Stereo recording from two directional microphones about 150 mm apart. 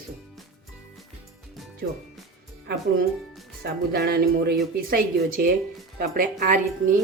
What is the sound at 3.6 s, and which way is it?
Speech, 90° right.